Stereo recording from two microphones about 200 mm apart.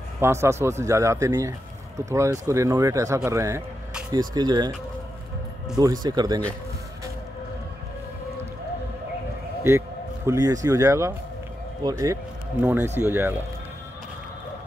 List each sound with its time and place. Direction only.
0.2 s speech: 15° right (ahead or behind)
5.8 s speech: 20° right (ahead or behind)
9.6 s a man's voice: 15° right (ahead or behind)